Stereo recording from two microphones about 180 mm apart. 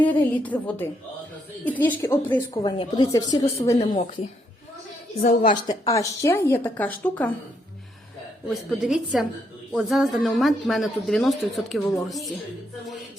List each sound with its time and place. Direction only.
0.0 s speech: 10° left (ahead or behind)
2.6 s speech: 25° left (ahead or behind)
3.8 s a woman's voice: 35° left (ahead or behind)
5.4 s speech: 25° left (ahead or behind); by 7.3 s 10° left (ahead or behind)
8.8 s a woman's voice: centre (ahead or behind)